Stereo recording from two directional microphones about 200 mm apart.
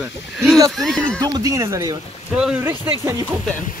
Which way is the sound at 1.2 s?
20° right (ahead or behind).